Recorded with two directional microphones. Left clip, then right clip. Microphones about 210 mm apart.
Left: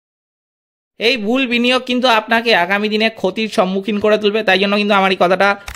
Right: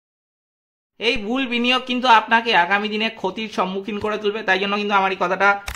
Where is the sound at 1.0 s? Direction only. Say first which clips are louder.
Left 6 dB; 35° left (ahead or behind).